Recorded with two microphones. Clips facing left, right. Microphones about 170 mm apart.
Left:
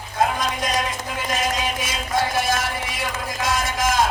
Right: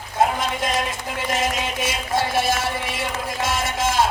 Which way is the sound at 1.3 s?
25° right (ahead or behind).